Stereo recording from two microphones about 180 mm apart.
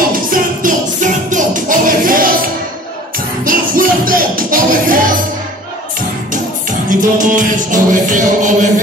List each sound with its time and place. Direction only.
0.1 s music: 50° right (ahead or behind)
3.4 s music: 50° right (ahead or behind)
6.9 s music: 45° right (ahead or behind)